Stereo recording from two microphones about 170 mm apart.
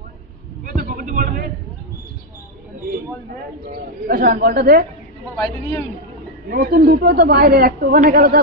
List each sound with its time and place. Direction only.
0.7 s a sound: 50° right (ahead or behind)
3.7 s a man's voice: 60° right (ahead or behind)
5.4 s a man's voice: 20° left (ahead or behind)
6.5 s a man's voice: 60° right (ahead or behind)